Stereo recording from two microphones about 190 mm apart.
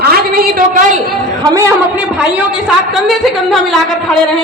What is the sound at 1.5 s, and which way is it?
Speech, 15° right (ahead or behind).